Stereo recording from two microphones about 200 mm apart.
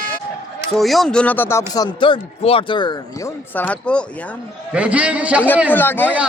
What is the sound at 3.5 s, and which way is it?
Speech, 5° left (ahead or behind).